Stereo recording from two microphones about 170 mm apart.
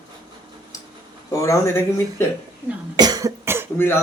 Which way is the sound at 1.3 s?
20° left (ahead or behind).